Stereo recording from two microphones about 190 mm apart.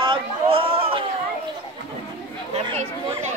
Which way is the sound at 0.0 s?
25° right (ahead or behind).